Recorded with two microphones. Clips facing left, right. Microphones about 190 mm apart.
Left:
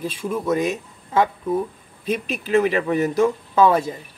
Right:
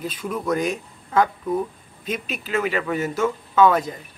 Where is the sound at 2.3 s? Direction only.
35° left (ahead or behind).